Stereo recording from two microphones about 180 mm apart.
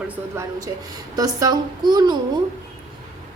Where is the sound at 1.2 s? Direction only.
20° right (ahead or behind).